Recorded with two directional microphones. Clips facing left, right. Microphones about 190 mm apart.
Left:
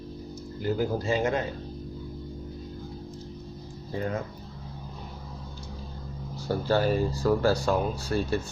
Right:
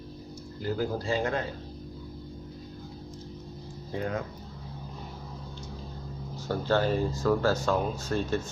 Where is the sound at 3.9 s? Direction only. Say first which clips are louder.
Left 1 dB; centre (ahead or behind).